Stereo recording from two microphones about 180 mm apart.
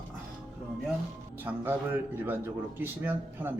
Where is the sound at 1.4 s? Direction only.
10° right (ahead or behind).